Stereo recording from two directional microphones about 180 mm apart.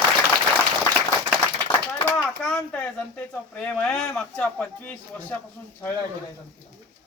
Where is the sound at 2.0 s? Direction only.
5° left (ahead or behind).